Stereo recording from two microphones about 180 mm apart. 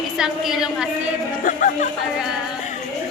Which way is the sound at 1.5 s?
45° left (ahead or behind).